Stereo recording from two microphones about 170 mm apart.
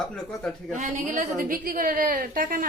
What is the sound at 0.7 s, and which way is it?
A woman's voice, 45° right (ahead or behind).